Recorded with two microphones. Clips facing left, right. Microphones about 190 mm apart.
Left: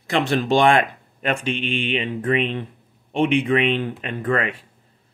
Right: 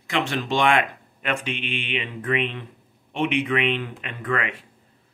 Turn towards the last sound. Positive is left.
turn(degrees=35)  # may be behind; listen again after turning